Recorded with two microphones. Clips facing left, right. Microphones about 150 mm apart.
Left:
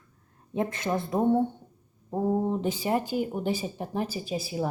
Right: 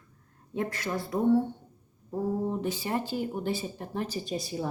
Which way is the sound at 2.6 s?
20° left (ahead or behind).